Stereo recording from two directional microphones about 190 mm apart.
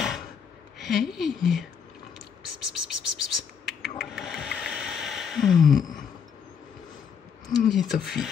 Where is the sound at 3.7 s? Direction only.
Centre (ahead or behind).